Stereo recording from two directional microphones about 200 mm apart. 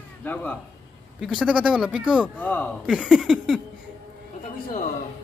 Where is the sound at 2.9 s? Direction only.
5° right (ahead or behind).